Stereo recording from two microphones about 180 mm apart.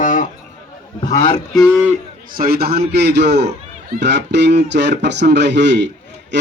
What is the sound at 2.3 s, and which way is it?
A man's voice, 55° right (ahead or behind).